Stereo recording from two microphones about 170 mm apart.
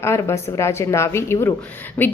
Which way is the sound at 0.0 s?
15° left (ahead or behind).